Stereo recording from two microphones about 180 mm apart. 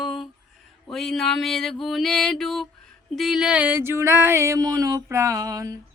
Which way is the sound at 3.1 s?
Centre (ahead or behind).